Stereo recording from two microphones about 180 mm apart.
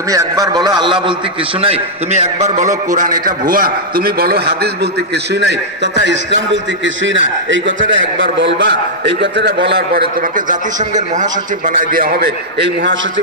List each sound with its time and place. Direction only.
0.1 s a man's voice: 20° right (ahead or behind); by 2.6 s 35° right (ahead or behind)
2.9 s a man's voice: 50° right (ahead or behind); by 9.6 s 75° right (ahead or behind)
9.6 s a man's voice: 60° right (ahead or behind)